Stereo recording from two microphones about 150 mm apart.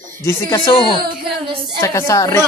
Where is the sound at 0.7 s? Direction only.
30° left (ahead or behind).